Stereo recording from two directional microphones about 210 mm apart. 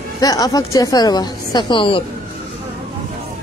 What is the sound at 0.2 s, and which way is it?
A woman's voice, 15° left (ahead or behind).